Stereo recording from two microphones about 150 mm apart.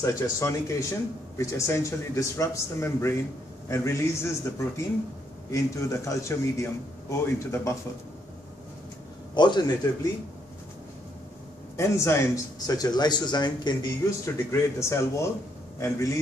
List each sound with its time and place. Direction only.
0.0 s a man's voice: 20° left (ahead or behind)
9.3 s a man's voice: 30° left (ahead or behind)
11.7 s a man's voice: 20° left (ahead or behind)